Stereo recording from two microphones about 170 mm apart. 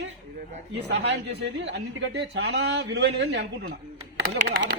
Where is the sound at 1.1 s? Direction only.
90° right.